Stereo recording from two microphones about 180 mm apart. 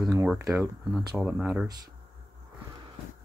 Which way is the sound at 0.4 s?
15° right (ahead or behind).